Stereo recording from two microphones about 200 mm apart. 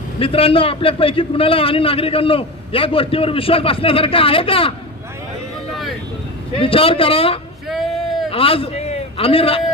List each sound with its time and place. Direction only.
0.2 s a man's voice: 30° left (ahead or behind)
6.6 s a man's voice: 25° left (ahead or behind)
7.7 s a sound: centre (ahead or behind)
8.3 s a man's voice: 30° left (ahead or behind)